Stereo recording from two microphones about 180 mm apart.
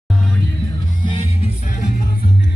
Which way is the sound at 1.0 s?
30° left (ahead or behind).